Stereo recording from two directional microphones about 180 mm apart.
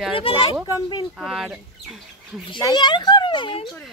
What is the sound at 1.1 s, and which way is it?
Speech, centre (ahead or behind).